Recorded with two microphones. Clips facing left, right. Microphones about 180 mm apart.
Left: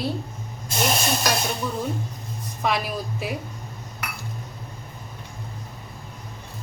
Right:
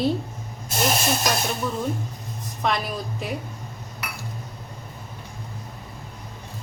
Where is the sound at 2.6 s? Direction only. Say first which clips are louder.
Even; 5° left (ahead or behind).